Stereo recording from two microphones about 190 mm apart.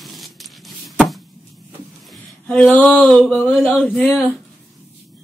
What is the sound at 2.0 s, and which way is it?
Speech, 5° left (ahead or behind).